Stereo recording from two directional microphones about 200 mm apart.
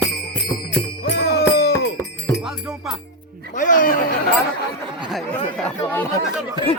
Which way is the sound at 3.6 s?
40° left (ahead or behind).